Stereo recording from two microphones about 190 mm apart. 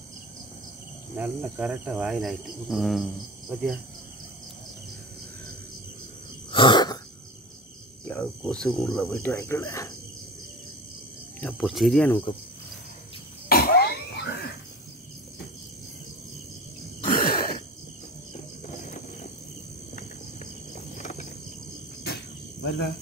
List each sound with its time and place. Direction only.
1.1 s cricket: 5° right (ahead or behind)
6.5 s sneeze: 25° left (ahead or behind)
8.1 s cricket: 5° left (ahead or behind)
9.3 s speech: 15° left (ahead or behind)
11.4 s cricket: centre (ahead or behind)
13.5 s cough: 55° left (ahead or behind)
17.0 s throat clearing: 50° left (ahead or behind)
20.7 s a sound: 35° left (ahead or behind)
22.0 s cricket: 60° left (ahead or behind)